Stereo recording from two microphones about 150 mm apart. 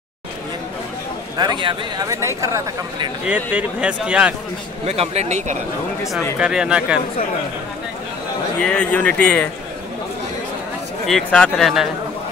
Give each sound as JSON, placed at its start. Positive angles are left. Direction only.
{"t": 1.4, "sound": "speech", "side_deg": -30}
{"t": 3.3, "sound": "a man's voice", "side_deg": -10}
{"t": 4.8, "sound": "speech", "side_deg": -45}
{"t": 6.4, "sound": "a man's voice", "side_deg": -5}
{"t": 8.6, "sound": "speech", "side_deg": 10}
{"t": 11.1, "sound": "speech", "side_deg": 5}